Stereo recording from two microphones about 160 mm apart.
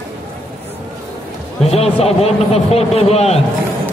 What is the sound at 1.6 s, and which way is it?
A man's voice, 40° left (ahead or behind).